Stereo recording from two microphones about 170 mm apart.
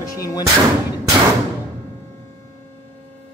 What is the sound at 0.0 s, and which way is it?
Music, 20° left (ahead or behind).